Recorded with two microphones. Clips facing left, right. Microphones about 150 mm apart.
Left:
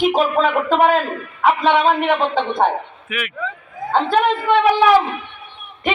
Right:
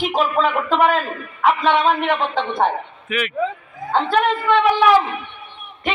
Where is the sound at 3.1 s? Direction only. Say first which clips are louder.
Right 5 dB; 5° left (ahead or behind).